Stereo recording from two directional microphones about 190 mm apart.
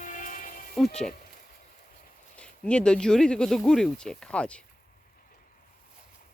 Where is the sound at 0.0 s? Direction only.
40° left (ahead or behind).